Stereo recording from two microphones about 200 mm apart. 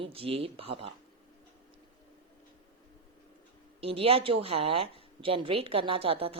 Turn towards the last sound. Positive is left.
turn(degrees=-30)  # may be behind; listen again after turning